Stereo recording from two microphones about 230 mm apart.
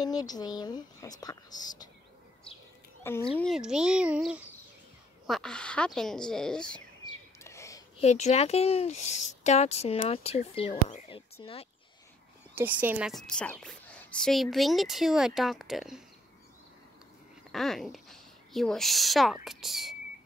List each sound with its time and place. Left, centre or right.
0.0 s speech: centre
3.3 s a woman's voice: centre
7.4 s a sound: centre
8.0 s speech: left
12.5 s a woman's voice: centre
17.5 s a woman's voice: centre